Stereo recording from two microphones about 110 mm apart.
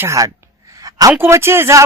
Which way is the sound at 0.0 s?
25° right (ahead or behind).